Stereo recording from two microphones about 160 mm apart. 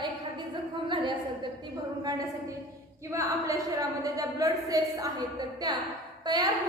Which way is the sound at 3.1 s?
20° right (ahead or behind).